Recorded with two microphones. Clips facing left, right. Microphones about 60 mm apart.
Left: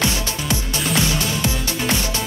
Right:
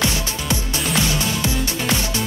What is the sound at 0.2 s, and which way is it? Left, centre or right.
Music, right.